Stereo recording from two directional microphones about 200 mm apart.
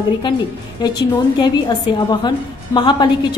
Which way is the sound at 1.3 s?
20° left (ahead or behind).